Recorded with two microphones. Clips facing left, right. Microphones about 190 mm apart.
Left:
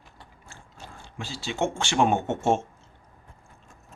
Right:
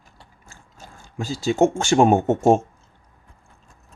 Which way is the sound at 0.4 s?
45° right (ahead or behind).